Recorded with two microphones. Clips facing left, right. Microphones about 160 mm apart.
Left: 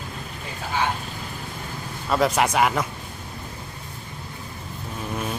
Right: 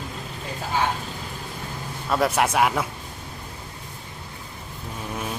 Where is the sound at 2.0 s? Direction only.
Centre (ahead or behind).